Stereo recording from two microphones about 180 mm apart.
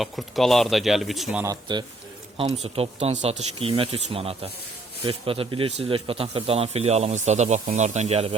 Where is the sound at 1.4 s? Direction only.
20° right (ahead or behind).